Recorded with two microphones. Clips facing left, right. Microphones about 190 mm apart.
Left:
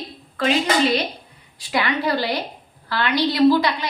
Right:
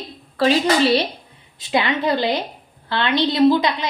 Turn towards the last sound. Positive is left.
turn(degrees=-20)  # may be behind; listen again after turning